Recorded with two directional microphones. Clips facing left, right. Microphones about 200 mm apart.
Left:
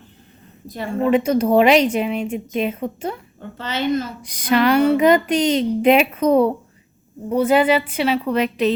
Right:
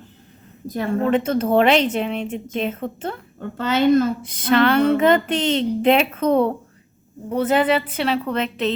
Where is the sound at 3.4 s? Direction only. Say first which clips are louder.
Right 8 dB; 50° right (ahead or behind).